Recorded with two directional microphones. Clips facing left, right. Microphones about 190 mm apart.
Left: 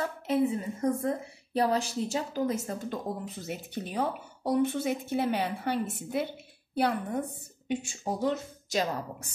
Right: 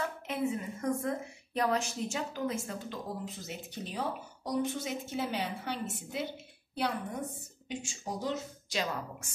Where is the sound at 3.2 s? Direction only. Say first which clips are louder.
Left 4 dB; 60° left (ahead or behind).